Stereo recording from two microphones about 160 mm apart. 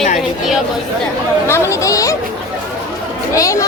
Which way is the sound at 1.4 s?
15° left (ahead or behind).